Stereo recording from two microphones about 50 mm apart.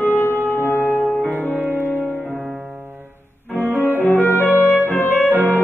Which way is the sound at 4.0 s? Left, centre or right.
Left.